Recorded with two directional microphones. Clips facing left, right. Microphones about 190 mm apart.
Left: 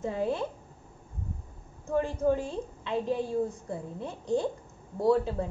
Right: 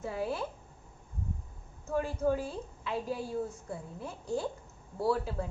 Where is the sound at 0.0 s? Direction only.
5° right (ahead or behind).